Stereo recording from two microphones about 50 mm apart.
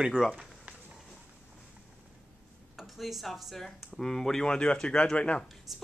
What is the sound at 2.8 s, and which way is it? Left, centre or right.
Speech, centre.